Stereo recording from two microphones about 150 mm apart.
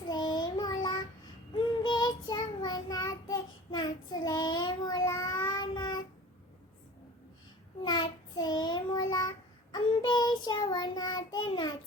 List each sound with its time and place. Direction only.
0.1 s child singing: 30° left (ahead or behind)
7.9 s child singing: 30° left (ahead or behind)